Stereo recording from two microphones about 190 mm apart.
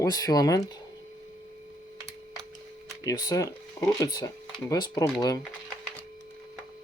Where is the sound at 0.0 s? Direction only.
20° left (ahead or behind).